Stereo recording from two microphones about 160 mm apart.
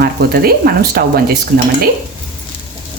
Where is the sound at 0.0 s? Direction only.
75° right (ahead or behind).